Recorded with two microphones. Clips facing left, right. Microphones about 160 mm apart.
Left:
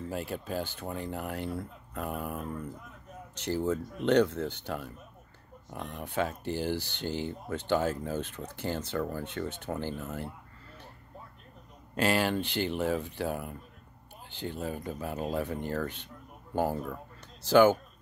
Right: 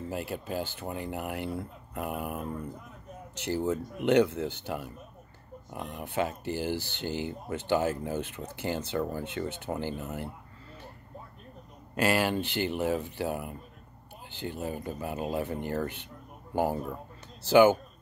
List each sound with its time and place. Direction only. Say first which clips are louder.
0.1 s speech: right 1 dB; 5° right (ahead or behind)
6.7 s speech: even; 50° right (ahead or behind)
7.1 s speech: even; 10° right (ahead or behind)
11.9 s speech: right 1 dB; 5° right (ahead or behind)
12.4 s speech: right 1 dB; 55° right (ahead or behind)
12.7 s speech: right 1 dB; 5° right (ahead or behind)